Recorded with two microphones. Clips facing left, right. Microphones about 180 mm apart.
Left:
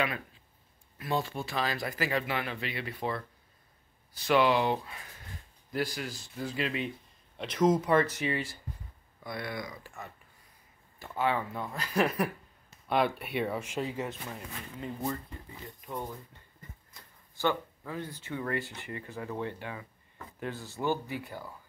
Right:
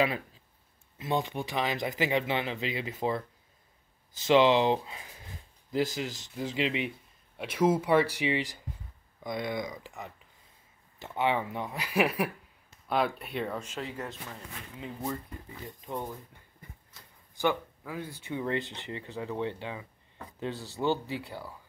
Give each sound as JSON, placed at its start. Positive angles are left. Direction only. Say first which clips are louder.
{"t": 0.9, "sound": "speech", "louder": "right 2 dB", "side_deg": -20}
{"t": 7.3, "sound": "speech", "louder": "even", "side_deg": -10}
{"t": 15.6, "sound": "speech", "louder": "right 2 dB", "side_deg": -20}
{"t": 17.4, "sound": "speech", "louder": "right 1 dB", "side_deg": -10}